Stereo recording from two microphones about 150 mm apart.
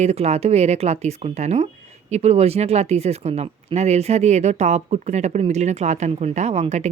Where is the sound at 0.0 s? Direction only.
45° right (ahead or behind).